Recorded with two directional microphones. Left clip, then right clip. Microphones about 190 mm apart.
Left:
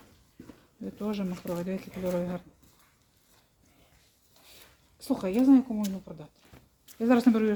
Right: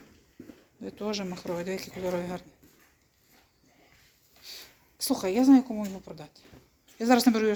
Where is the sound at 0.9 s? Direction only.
50° left (ahead or behind).